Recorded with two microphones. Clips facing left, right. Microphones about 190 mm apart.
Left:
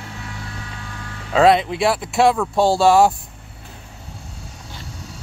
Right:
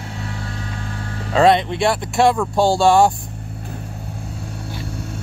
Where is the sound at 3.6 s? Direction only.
50° right (ahead or behind).